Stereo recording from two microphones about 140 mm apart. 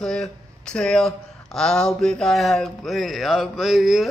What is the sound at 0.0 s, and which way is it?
Speech, 5° left (ahead or behind).